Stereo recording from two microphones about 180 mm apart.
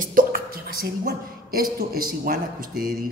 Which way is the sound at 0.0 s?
50° right (ahead or behind).